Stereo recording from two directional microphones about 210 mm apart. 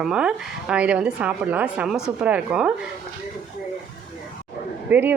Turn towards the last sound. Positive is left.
turn(degrees=-10)  # may be behind; listen again after turning